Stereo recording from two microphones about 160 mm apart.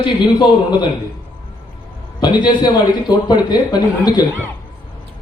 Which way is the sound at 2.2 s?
25° left (ahead or behind).